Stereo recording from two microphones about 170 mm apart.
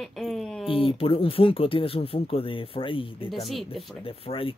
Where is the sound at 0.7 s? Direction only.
30° left (ahead or behind).